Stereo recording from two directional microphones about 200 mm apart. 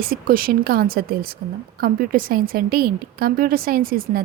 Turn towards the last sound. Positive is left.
turn(degrees=-45)  # may be behind; listen again after turning